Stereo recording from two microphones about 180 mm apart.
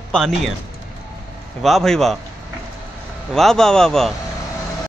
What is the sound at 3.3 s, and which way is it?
Speech, centre (ahead or behind).